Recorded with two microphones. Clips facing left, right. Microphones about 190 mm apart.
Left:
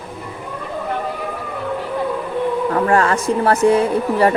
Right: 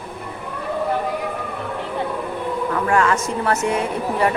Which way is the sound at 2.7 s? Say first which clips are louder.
Left 1 dB; 35° left (ahead or behind).